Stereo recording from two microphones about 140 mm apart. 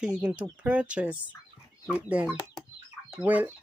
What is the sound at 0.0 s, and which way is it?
Speech, 5° right (ahead or behind).